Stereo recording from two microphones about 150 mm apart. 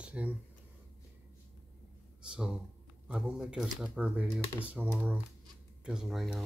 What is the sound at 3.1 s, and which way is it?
Speech, 5° right (ahead or behind).